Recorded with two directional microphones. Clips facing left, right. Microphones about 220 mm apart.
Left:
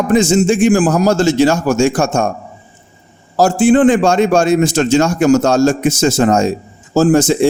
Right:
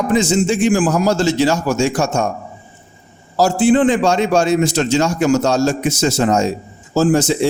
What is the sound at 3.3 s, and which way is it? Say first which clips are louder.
A man's voice: left 3 dB; 50° left (ahead or behind).